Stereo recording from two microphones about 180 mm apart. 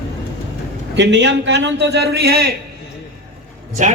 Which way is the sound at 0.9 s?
75° right (ahead or behind).